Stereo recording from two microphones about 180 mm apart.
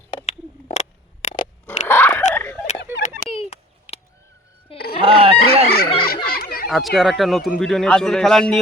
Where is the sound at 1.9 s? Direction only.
10° left (ahead or behind).